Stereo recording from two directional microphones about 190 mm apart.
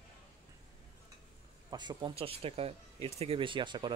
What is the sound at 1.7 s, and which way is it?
Speech, 25° right (ahead or behind).